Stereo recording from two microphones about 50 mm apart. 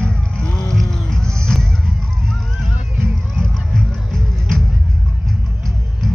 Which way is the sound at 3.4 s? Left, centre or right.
Centre.